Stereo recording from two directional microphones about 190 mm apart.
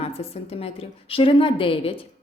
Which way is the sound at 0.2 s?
30° left (ahead or behind).